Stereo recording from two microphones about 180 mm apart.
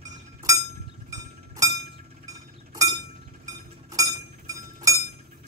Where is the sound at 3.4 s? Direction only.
20° right (ahead or behind).